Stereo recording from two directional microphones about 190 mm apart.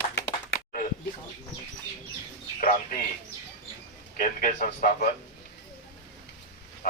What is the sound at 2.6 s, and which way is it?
Speech, 50° left (ahead or behind).